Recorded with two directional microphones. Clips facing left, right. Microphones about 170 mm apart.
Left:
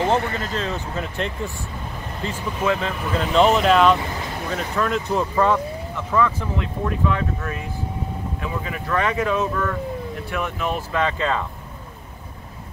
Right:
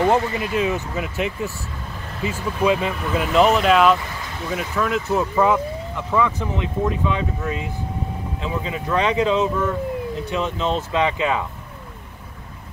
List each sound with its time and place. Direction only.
0.1 s speech: 15° right (ahead or behind)